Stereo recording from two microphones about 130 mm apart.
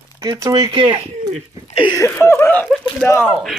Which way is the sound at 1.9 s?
20° left (ahead or behind).